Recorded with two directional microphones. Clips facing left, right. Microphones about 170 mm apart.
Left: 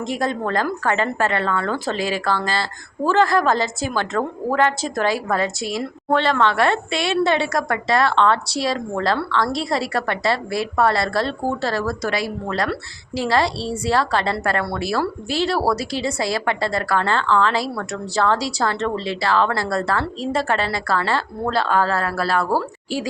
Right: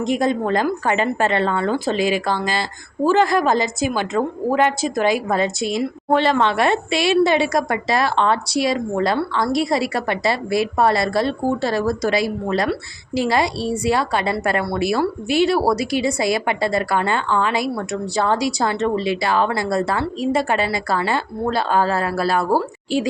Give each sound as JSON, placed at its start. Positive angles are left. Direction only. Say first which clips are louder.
{"t": 0.0, "sound": "a woman's voice", "louder": "right 4 dB", "side_deg": -20}
{"t": 8.4, "sound": "speech", "louder": "right 3 dB", "side_deg": 30}
{"t": 9.0, "sound": "a woman's voice", "louder": "right 1 dB", "side_deg": -15}